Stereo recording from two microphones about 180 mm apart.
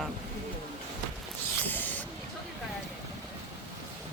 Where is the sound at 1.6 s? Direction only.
10° left (ahead or behind).